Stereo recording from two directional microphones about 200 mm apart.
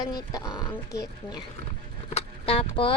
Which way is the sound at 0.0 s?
20° left (ahead or behind).